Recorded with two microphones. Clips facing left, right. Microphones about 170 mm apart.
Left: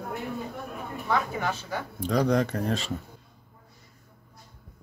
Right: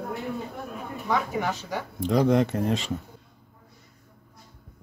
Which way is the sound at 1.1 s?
15° right (ahead or behind).